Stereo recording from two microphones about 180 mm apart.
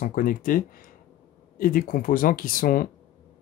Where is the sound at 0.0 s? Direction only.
50° left (ahead or behind).